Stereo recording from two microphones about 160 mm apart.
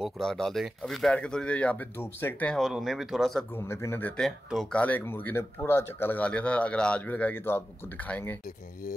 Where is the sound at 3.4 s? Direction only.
15° left (ahead or behind).